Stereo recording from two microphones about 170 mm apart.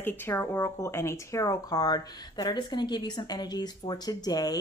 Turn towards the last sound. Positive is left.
turn(degrees=20)  # may be behind; listen again after turning